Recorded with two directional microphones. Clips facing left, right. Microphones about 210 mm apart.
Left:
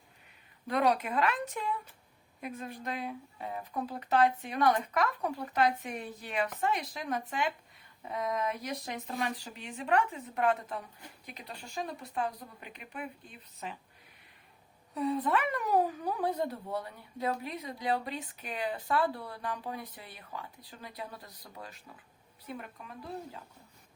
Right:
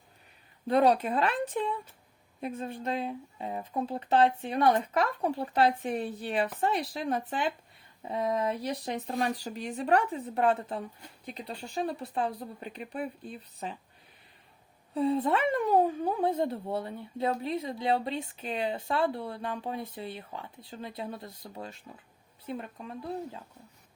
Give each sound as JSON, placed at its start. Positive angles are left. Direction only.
{"t": 0.7, "sound": "speech", "side_deg": -30}
{"t": 14.9, "sound": "speech", "side_deg": -30}